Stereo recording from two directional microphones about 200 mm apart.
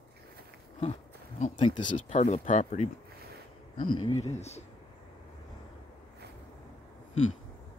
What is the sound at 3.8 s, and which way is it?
Speech, 25° left (ahead or behind).